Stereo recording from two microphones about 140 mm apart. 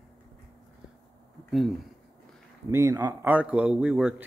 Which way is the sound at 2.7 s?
20° right (ahead or behind).